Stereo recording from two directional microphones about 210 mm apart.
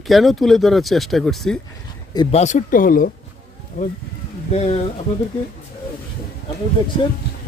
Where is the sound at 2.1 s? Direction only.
25° left (ahead or behind); by 3.9 s 45° left (ahead or behind).